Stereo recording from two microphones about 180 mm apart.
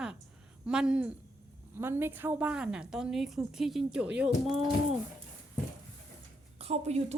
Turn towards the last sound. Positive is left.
turn(degrees=-35)  # may be behind; listen again after turning